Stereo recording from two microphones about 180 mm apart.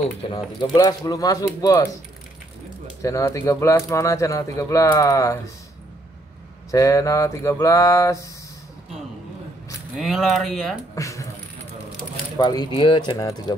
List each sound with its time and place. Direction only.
0.0 s speech: 25° left (ahead or behind)
3.0 s speech: 15° left (ahead or behind)
6.7 s speech: 20° left (ahead or behind)
9.9 s speech: centre (ahead or behind)
11.0 s speech: 15° left (ahead or behind)
12.4 s speech: 25° left (ahead or behind)